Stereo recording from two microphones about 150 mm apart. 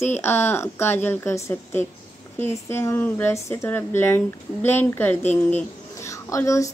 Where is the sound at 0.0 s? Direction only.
15° left (ahead or behind).